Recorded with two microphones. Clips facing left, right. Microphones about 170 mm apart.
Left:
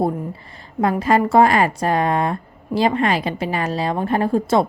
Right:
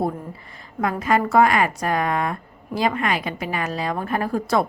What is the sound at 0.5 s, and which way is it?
A woman's voice, 30° left (ahead or behind).